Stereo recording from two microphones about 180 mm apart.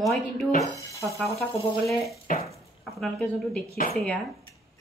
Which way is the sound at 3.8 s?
50° left (ahead or behind).